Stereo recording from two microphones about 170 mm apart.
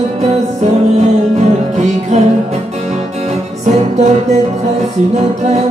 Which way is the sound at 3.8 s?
40° right (ahead or behind).